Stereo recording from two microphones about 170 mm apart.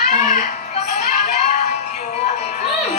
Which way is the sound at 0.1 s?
45° left (ahead or behind).